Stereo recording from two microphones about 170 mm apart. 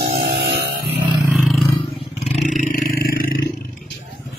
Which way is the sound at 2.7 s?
55° left (ahead or behind).